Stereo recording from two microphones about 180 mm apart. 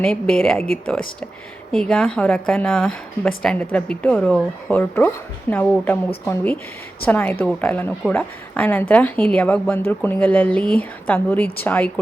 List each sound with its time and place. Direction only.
0.0 s a woman's voice: 5° left (ahead or behind)
1.7 s a woman's voice: 5° left (ahead or behind)